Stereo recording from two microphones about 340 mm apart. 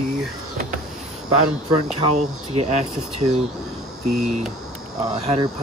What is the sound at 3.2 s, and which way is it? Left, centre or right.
Speech, centre.